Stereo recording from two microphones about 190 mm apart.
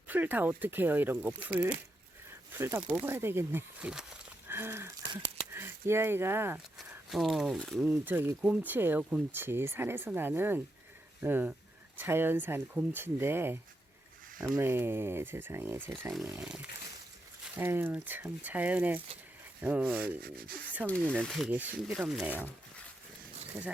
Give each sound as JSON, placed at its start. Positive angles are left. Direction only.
{"t": 0.1, "sound": "speech", "side_deg": -10}
{"t": 4.4, "sound": "a sound", "side_deg": -10}
{"t": 5.5, "sound": "speech", "side_deg": -10}
{"t": 6.7, "sound": "speech", "side_deg": 0}
{"t": 20.2, "sound": "speech", "side_deg": -50}
{"t": 20.8, "sound": "speech", "side_deg": 5}
{"t": 21.5, "sound": "speech", "side_deg": -10}